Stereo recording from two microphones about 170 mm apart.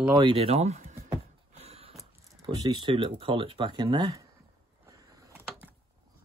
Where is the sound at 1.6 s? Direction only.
35° right (ahead or behind).